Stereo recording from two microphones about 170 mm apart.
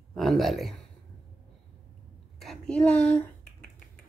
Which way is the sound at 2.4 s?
5° left (ahead or behind).